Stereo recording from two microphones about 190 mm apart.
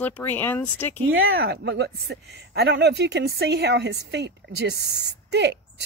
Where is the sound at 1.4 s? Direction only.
65° right (ahead or behind).